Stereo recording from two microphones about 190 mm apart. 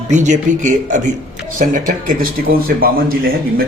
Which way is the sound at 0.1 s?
40° right (ahead or behind).